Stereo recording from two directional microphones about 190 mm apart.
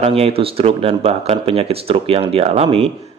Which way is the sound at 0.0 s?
30° right (ahead or behind).